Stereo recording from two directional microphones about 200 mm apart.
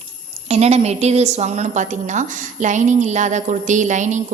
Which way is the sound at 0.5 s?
30° right (ahead or behind).